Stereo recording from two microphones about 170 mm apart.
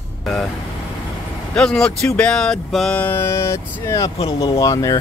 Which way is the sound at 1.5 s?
5° left (ahead or behind).